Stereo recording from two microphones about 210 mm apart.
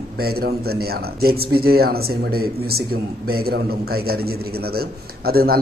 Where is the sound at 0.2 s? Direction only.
45° right (ahead or behind).